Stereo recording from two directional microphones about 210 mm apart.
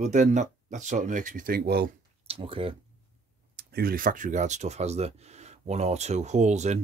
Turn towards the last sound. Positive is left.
turn(degrees=-35)  # may be behind; listen again after turning